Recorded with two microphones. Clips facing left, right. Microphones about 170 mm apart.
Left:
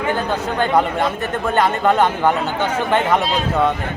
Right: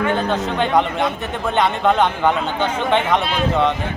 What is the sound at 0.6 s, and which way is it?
Speech, 5° left (ahead or behind).